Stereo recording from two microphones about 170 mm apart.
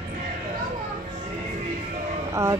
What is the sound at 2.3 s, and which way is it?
Speech, 15° right (ahead or behind).